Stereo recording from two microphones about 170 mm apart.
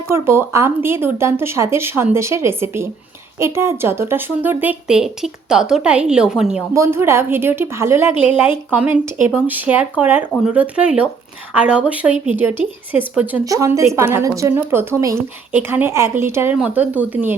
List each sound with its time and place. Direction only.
0.1 s a woman's voice: 15° right (ahead or behind)
6.7 s a woman's voice: 15° right (ahead or behind)